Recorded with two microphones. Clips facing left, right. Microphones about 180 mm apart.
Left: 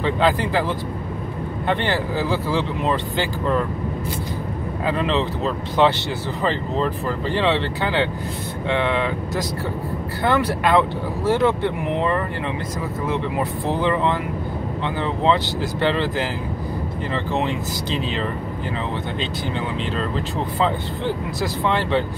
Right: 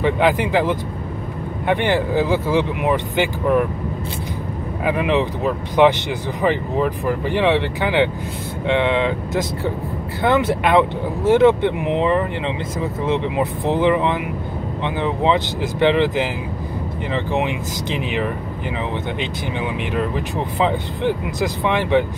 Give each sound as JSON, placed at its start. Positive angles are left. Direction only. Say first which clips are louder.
{"t": 0.0, "sound": "speech", "louder": "right 2 dB", "side_deg": -15}
{"t": 4.8, "sound": "speech", "louder": "right 3 dB", "side_deg": -15}
{"t": 19.8, "sound": "speech", "louder": "right 2 dB", "side_deg": -15}